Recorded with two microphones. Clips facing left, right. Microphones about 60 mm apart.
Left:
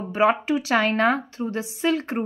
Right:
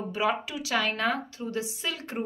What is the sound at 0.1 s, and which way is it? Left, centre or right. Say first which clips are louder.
A woman's voice: left 9 dB; left.